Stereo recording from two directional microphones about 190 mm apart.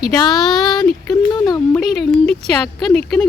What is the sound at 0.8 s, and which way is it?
Speech, 20° left (ahead or behind).